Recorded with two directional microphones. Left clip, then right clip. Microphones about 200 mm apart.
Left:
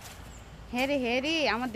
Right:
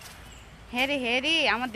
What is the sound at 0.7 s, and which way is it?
Speech, centre (ahead or behind).